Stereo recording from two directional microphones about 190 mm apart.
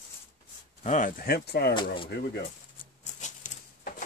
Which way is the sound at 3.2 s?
40° left (ahead or behind).